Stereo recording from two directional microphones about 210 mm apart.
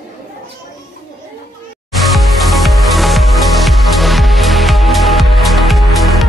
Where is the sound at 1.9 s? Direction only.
Centre (ahead or behind).